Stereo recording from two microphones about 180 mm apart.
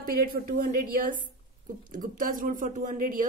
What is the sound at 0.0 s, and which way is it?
A woman's voice, 55° right (ahead or behind).